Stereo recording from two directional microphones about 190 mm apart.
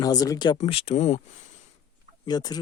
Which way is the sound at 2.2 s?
20° left (ahead or behind).